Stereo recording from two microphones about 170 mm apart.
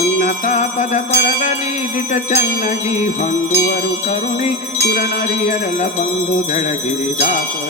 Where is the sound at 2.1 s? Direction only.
45° left (ahead or behind).